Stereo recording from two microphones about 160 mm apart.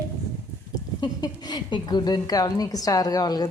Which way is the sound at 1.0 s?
25° left (ahead or behind).